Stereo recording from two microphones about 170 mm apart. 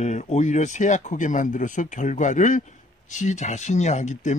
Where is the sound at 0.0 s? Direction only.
40° left (ahead or behind).